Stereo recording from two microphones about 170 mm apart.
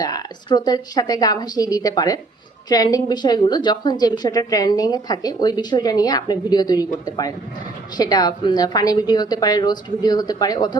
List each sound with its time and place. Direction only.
0.0 s a woman's voice: 25° left (ahead or behind)